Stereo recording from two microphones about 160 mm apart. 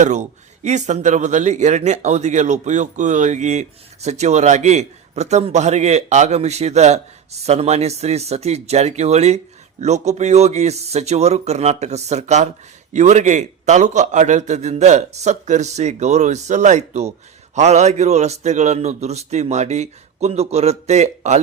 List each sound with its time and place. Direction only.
0.0 s speech: 50° right (ahead or behind)